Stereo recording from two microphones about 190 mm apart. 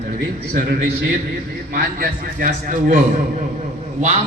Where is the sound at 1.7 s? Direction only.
50° right (ahead or behind).